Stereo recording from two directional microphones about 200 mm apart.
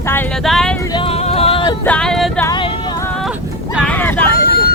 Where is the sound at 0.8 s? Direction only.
25° left (ahead or behind).